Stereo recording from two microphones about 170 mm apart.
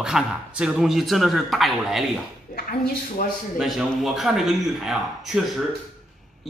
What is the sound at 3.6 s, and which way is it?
Speech, centre (ahead or behind).